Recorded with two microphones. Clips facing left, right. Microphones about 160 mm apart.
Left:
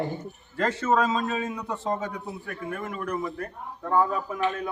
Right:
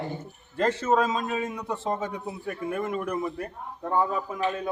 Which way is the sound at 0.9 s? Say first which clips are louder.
Left 3 dB; 5° right (ahead or behind).